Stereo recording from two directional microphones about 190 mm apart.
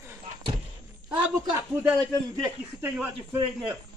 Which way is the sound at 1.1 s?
20° right (ahead or behind).